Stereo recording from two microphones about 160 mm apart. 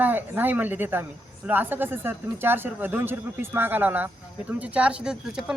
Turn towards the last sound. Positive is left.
turn(degrees=-5)  # may be behind; listen again after turning